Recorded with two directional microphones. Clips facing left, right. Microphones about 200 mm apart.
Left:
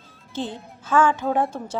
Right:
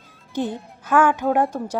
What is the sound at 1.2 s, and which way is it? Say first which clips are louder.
Speech: right 3 dB; 5° right (ahead or behind).